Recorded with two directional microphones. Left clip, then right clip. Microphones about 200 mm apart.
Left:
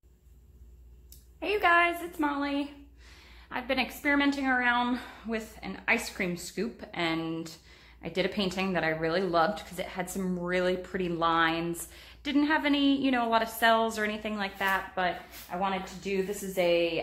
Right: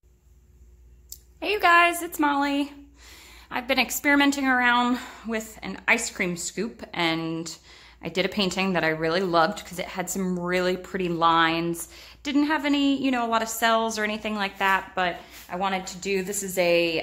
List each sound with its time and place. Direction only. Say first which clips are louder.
1.4 s a woman's voice: right 5 dB; 20° right (ahead or behind); by 17.0 s 50° right (ahead or behind)